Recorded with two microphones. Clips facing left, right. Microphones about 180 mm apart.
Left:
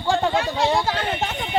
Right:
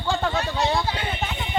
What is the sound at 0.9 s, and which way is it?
Speech, 45° left (ahead or behind).